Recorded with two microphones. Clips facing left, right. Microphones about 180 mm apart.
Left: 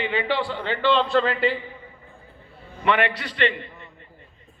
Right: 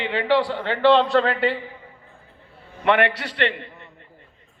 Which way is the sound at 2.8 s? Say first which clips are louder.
Right 3 dB; 65° right (ahead or behind).